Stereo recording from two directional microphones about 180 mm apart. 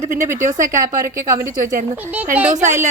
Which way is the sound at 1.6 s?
50° right (ahead or behind).